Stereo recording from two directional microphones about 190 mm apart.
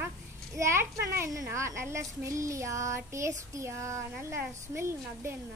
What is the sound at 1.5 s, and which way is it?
A woman's voice, 15° right (ahead or behind).